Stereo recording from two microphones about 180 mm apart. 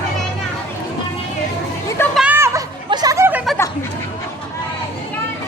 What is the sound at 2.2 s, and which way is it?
Chatter, 10° right (ahead or behind).